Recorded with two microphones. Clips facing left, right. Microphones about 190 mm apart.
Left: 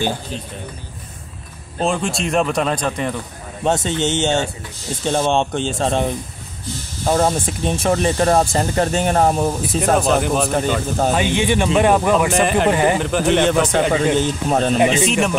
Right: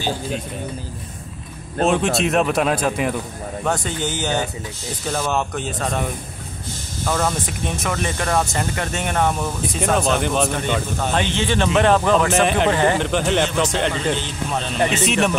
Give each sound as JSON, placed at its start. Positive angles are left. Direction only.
{"t": 1.9, "sound": "speech", "side_deg": 0}
{"t": 3.6, "sound": "speech", "side_deg": 25}
{"t": 7.1, "sound": "speech", "side_deg": 30}
{"t": 9.9, "sound": "speech", "side_deg": 0}
{"t": 11.1, "sound": "speech", "side_deg": 15}
{"t": 12.3, "sound": "speech", "side_deg": 0}
{"t": 12.7, "sound": "speech", "side_deg": 15}
{"t": 13.7, "sound": "speech", "side_deg": 55}
{"t": 15.0, "sound": "speech", "side_deg": 0}